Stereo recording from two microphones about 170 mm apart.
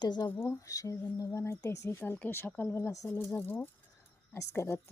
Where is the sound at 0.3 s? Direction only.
15° left (ahead or behind).